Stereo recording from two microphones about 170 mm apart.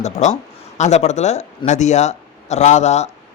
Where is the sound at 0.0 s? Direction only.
45° left (ahead or behind).